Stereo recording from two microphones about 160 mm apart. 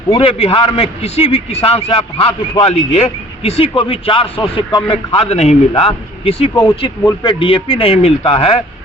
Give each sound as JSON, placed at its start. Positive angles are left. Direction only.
{"t": 0.1, "sound": "a man's voice", "side_deg": 35}
{"t": 6.5, "sound": "speech", "side_deg": 15}
{"t": 7.3, "sound": "a man's voice", "side_deg": 30}